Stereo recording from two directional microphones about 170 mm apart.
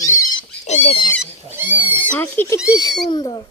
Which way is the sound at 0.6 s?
40° left (ahead or behind).